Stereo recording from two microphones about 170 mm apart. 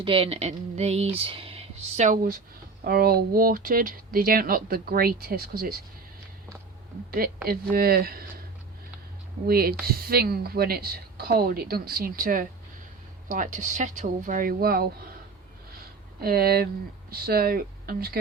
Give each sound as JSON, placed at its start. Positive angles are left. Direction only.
{"t": 0.0, "sound": "speech", "side_deg": -30}
{"t": 2.8, "sound": "speech", "side_deg": -65}
{"t": 7.4, "sound": "speech", "side_deg": -60}
{"t": 9.5, "sound": "speech", "side_deg": -65}
{"t": 16.2, "sound": "speech", "side_deg": -65}